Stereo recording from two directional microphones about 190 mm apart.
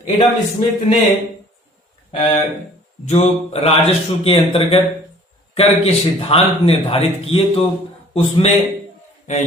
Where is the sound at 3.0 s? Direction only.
35° left (ahead or behind).